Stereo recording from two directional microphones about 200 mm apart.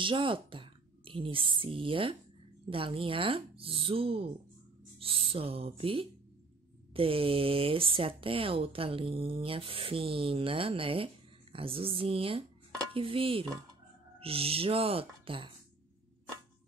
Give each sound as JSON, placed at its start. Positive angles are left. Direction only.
{"t": 0.0, "sound": "speech", "side_deg": -25}